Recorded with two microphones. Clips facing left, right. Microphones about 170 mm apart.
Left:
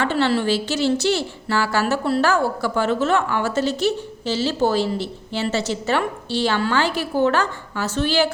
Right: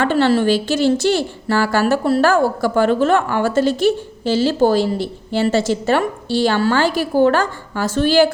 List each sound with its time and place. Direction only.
0.0 s a woman's voice: 50° right (ahead or behind)